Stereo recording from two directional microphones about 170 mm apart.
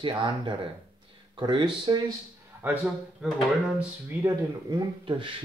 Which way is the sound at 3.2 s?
10° right (ahead or behind).